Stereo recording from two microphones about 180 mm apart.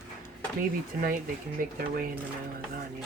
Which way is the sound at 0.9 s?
55° right (ahead or behind).